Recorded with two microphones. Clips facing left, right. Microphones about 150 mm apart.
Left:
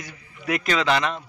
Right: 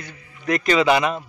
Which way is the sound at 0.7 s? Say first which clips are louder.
Right 5 dB; 10° right (ahead or behind).